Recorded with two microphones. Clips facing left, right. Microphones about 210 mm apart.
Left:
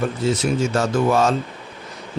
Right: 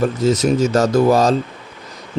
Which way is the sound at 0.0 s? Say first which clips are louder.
Right 5 dB; 40° right (ahead or behind).